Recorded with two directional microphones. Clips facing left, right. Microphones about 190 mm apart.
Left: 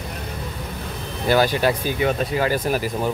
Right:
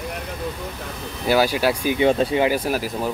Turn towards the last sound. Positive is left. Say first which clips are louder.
# left 1 dB
turn(degrees=-5)  # may be behind; listen again after turning